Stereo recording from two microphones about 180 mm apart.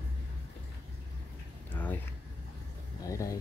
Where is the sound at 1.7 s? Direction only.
10° left (ahead or behind).